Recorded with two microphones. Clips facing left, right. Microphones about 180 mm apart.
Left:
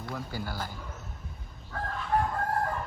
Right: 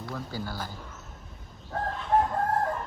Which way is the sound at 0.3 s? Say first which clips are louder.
Right 1 dB; 10° left (ahead or behind).